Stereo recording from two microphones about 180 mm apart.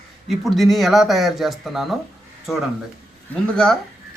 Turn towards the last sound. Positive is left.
turn(degrees=5)  # may be behind; listen again after turning